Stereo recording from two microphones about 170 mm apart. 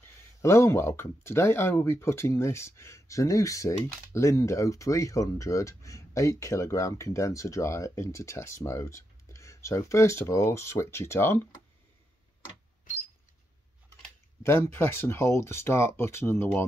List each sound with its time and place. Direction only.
0.4 s speech: 15° left (ahead or behind)
14.4 s speech: 15° left (ahead or behind)